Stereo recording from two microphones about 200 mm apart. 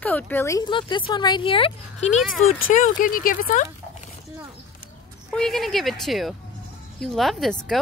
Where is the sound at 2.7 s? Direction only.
40° left (ahead or behind).